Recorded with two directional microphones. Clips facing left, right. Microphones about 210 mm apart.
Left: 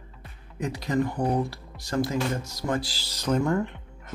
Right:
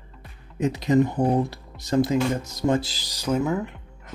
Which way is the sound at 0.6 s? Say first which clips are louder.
Right 6 dB; 20° right (ahead or behind).